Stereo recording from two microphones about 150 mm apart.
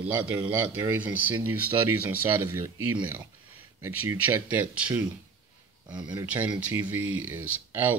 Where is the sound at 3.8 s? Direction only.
20° right (ahead or behind).